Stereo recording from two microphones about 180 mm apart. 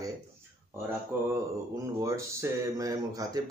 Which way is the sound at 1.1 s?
10° right (ahead or behind).